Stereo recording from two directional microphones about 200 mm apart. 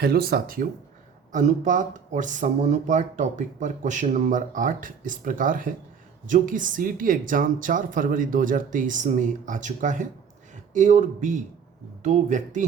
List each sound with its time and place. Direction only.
0.0 s speech: 50° right (ahead or behind)